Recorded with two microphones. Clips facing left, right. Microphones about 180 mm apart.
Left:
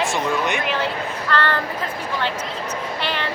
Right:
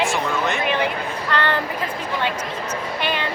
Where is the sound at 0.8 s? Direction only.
15° right (ahead or behind).